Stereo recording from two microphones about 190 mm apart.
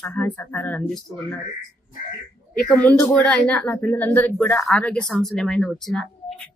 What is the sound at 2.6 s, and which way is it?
Speech, 5° left (ahead or behind).